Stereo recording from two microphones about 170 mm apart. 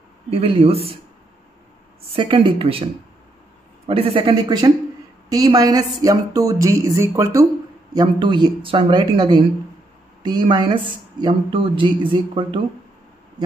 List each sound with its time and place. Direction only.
0.3 s speech: 35° right (ahead or behind)
2.1 s speech: 30° right (ahead or behind)